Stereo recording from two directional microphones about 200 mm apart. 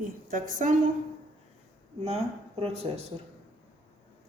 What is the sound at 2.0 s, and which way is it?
Speech, 30° right (ahead or behind).